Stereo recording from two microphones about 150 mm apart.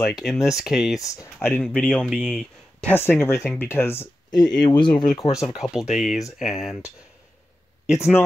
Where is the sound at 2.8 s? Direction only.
10° left (ahead or behind).